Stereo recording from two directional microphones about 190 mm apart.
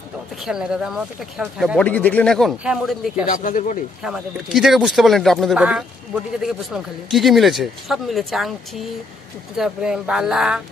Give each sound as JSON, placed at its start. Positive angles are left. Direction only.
{"t": 0.5, "sound": "speech", "side_deg": -5}
{"t": 1.8, "sound": "speech", "side_deg": 10}
{"t": 3.3, "sound": "speech", "side_deg": 45}
{"t": 4.0, "sound": "speech", "side_deg": 0}
{"t": 9.6, "sound": "speech", "side_deg": -5}